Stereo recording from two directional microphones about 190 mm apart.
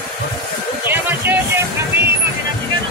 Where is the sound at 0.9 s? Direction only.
10° right (ahead or behind).